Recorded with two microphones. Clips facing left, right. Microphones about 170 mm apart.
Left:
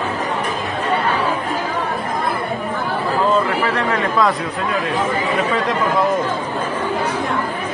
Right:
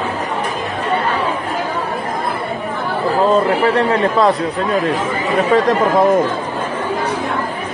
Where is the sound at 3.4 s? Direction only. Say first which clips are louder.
Right 5 dB; 35° right (ahead or behind).